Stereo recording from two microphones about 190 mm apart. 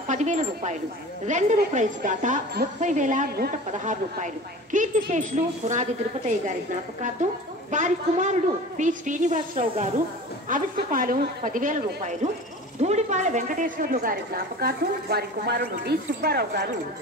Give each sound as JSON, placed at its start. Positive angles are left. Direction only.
{"t": 0.1, "sound": "a woman's voice", "side_deg": -40}
{"t": 7.7, "sound": "a woman's voice", "side_deg": -40}